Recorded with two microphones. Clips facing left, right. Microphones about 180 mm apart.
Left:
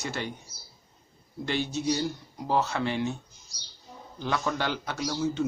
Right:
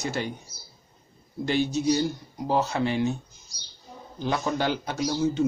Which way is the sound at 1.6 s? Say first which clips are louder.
Right 4 dB; 40° right (ahead or behind).